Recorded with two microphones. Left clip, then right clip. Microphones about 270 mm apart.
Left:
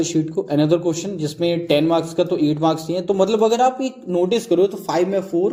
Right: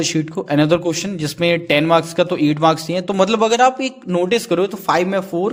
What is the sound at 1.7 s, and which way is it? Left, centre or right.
Speech, right.